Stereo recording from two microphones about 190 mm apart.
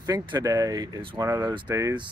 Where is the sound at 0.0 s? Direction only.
20° right (ahead or behind).